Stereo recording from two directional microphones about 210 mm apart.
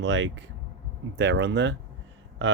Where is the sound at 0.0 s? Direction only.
60° right (ahead or behind).